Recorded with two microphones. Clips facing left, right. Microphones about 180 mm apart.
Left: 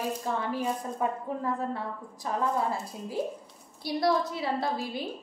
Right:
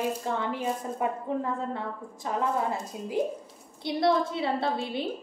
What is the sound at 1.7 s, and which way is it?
A woman's voice, 20° right (ahead or behind).